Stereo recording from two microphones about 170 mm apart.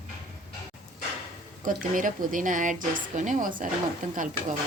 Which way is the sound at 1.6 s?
50° right (ahead or behind).